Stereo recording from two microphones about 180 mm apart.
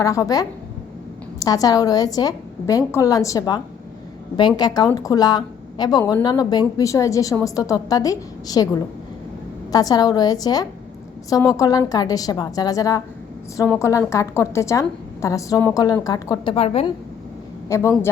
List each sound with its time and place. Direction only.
0.0 s a woman's voice: 20° left (ahead or behind)
1.5 s a woman's voice: 20° left (ahead or behind)
9.7 s a woman's voice: 20° left (ahead or behind)
17.7 s a woman's voice: 15° left (ahead or behind)